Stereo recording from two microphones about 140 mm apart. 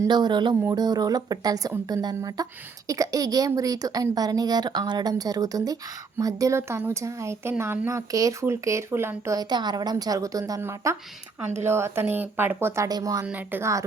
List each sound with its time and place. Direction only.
0.0 s speech: 30° right (ahead or behind)
13.2 s speech: 15° right (ahead or behind)